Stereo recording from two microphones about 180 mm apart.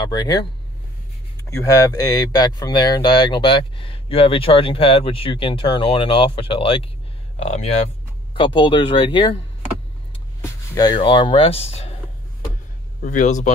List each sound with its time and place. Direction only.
0.0 s speech: 20° left (ahead or behind)
1.5 s speech: 15° left (ahead or behind)
10.4 s speech: 20° left (ahead or behind); by 11.9 s 35° left (ahead or behind)
13.0 s speech: 45° left (ahead or behind)